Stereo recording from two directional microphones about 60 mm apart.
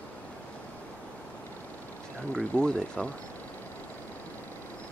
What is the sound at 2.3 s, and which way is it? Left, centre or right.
Speech, centre.